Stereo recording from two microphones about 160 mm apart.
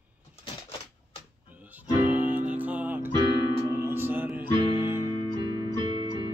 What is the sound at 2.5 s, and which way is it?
Music, 10° right (ahead or behind).